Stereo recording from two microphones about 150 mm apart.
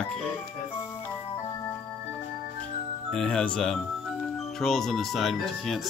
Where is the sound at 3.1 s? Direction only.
5° left (ahead or behind).